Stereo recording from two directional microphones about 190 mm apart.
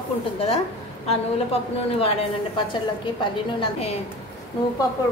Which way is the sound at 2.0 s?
30° left (ahead or behind).